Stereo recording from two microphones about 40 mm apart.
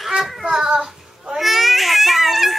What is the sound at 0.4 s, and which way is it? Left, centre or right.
Baby cry, centre.